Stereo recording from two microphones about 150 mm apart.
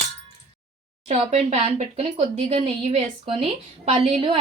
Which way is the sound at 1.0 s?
45° right (ahead or behind).